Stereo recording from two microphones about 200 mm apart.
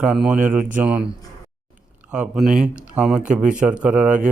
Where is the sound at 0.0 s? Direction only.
5° right (ahead or behind).